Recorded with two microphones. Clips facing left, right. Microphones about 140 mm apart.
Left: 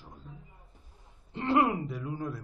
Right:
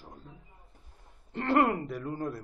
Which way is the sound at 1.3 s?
55° right (ahead or behind).